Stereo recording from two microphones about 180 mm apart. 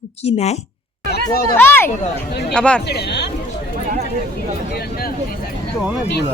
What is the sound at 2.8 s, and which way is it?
Speech, 65° left (ahead or behind).